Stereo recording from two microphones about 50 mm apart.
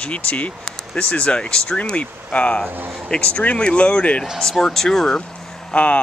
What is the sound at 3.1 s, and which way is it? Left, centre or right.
Speech, left.